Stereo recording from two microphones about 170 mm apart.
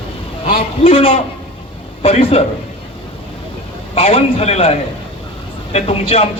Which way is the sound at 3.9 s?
35° left (ahead or behind).